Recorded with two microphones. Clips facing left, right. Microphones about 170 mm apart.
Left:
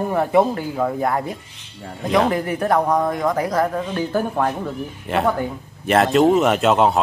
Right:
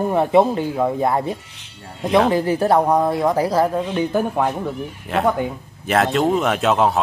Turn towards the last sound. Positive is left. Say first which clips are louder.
# left 1 dB
turn(degrees=0)  # may be behind; listen again after turning